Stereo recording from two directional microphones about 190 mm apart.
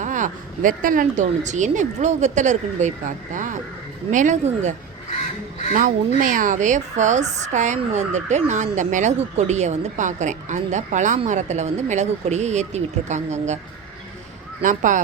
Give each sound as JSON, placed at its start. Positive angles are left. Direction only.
{"t": 0.0, "sound": "speech", "side_deg": -40}
{"t": 5.7, "sound": "speech", "side_deg": -45}
{"t": 14.6, "sound": "speech", "side_deg": -45}